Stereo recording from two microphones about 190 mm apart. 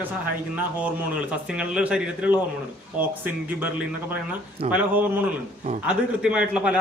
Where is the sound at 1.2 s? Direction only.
5° right (ahead or behind).